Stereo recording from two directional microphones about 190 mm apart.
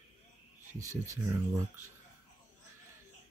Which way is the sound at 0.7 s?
15° right (ahead or behind).